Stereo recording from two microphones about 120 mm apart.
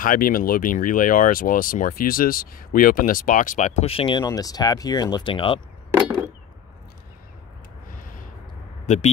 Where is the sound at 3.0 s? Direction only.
90° left; by 4.2 s 50° left (ahead or behind).